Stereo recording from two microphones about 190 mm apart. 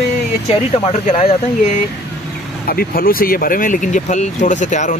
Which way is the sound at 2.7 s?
50° left (ahead or behind).